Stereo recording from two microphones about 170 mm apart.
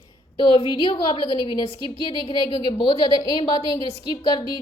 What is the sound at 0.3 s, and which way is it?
A woman's voice, 30° left (ahead or behind).